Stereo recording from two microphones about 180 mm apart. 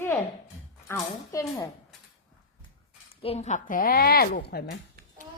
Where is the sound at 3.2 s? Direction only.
35° left (ahead or behind); by 4.8 s 60° left (ahead or behind).